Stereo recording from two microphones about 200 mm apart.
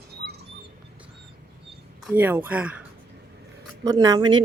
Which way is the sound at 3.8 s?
20° right (ahead or behind).